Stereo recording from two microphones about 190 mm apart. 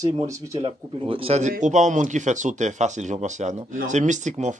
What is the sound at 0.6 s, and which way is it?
Speech, 30° right (ahead or behind).